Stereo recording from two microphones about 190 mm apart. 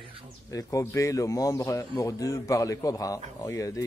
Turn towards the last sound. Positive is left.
turn(degrees=15)  # may be behind; listen again after turning